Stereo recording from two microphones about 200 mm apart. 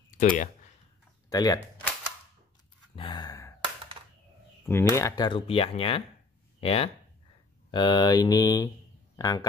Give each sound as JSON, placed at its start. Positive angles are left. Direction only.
{"t": 0.2, "sound": "speech", "side_deg": 40}
{"t": 1.3, "sound": "speech", "side_deg": 20}
{"t": 3.0, "sound": "sigh", "side_deg": 20}
{"t": 3.6, "sound": "a sound", "side_deg": -25}
{"t": 4.6, "sound": "speech", "side_deg": 15}